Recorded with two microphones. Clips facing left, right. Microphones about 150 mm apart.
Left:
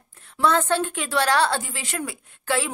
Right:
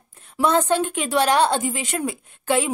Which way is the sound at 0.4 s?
15° right (ahead or behind).